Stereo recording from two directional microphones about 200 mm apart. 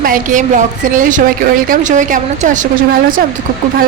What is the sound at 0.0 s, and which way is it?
Speech, 40° right (ahead or behind).